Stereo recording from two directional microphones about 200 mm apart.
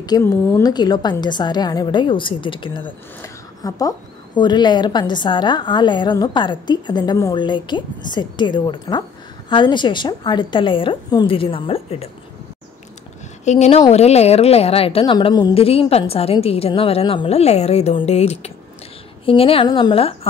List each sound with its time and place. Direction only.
0.0 s a woman's voice: 15° left (ahead or behind)
3.2 s a sound: 15° left (ahead or behind)
4.4 s a woman's voice: 20° left (ahead or behind)
13.5 s a woman's voice: 35° left (ahead or behind)